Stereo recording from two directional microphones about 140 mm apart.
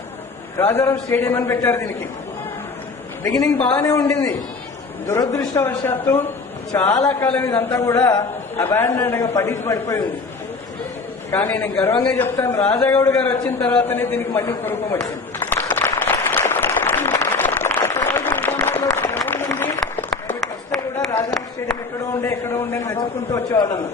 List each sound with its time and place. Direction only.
0.6 s a man's voice: 20° left (ahead or behind)
3.8 s a man's voice: 25° left (ahead or behind)
5.3 s a man's voice: 15° left (ahead or behind)
11.3 s a man's voice: 10° left (ahead or behind)
12.4 s a man's voice: 25° left (ahead or behind)
13.1 s a sound: 10° left (ahead or behind)
22.1 s a man's voice: 15° left (ahead or behind)